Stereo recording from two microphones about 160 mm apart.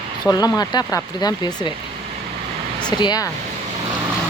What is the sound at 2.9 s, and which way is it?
Speech, 25° left (ahead or behind).